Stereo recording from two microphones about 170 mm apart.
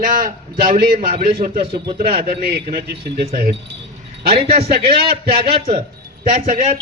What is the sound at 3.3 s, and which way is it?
A man's voice, 60° right (ahead or behind).